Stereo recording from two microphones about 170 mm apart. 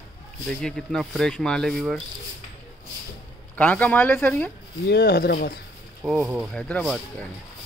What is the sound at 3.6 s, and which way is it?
Speech, 10° left (ahead or behind).